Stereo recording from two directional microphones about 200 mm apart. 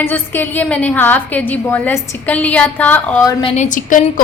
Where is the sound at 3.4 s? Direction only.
35° left (ahead or behind).